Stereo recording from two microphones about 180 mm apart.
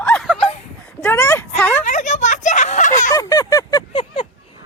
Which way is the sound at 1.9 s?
40° left (ahead or behind).